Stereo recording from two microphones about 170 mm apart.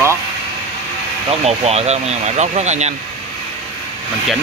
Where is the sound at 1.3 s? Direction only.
40° right (ahead or behind).